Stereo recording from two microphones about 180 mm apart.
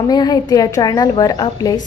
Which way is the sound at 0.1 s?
20° left (ahead or behind).